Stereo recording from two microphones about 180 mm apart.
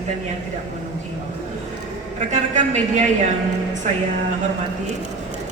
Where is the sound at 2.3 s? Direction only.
40° right (ahead or behind).